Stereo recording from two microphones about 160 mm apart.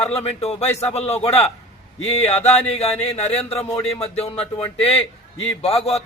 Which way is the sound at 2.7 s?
40° left (ahead or behind).